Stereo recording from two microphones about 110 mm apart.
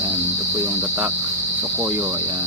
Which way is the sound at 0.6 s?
20° right (ahead or behind).